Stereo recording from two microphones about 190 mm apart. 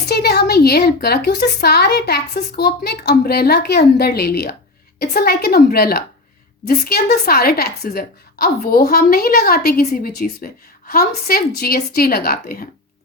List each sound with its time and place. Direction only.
0.1 s a woman's voice: 55° left (ahead or behind)